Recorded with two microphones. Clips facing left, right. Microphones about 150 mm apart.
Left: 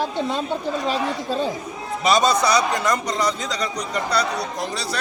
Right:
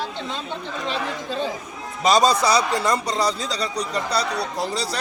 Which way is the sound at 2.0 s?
35° right (ahead or behind).